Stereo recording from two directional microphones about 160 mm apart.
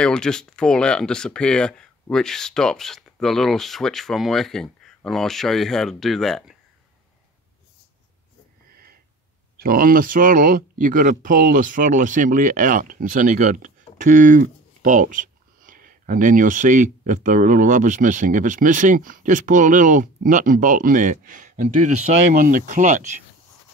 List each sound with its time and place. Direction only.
0.0 s speech: 5° left (ahead or behind)
9.6 s speech: 65° right (ahead or behind)
22.3 s speech: 60° right (ahead or behind)